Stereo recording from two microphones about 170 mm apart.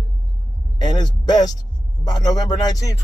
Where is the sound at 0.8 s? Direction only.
25° left (ahead or behind).